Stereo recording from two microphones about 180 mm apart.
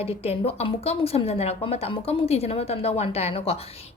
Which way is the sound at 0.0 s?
35° left (ahead or behind).